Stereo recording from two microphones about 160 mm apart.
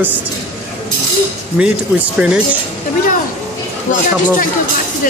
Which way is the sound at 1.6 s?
10° right (ahead or behind).